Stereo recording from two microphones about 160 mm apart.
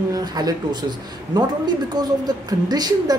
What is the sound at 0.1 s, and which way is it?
A woman's voice, 25° right (ahead or behind).